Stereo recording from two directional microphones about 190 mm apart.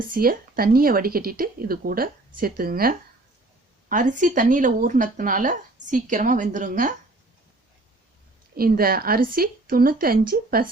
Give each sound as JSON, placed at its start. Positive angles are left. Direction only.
{"t": 0.1, "sound": "speech", "side_deg": -50}
{"t": 8.5, "sound": "speech", "side_deg": -50}